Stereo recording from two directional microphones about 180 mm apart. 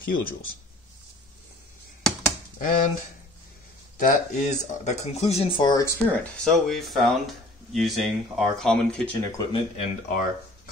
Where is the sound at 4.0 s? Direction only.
45° left (ahead or behind); by 5.8 s 25° left (ahead or behind).